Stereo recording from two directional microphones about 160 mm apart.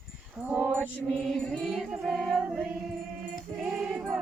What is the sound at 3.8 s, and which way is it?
Music, 5° right (ahead or behind).